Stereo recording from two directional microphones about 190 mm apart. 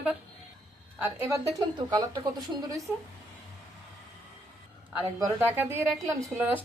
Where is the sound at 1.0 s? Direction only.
15° right (ahead or behind).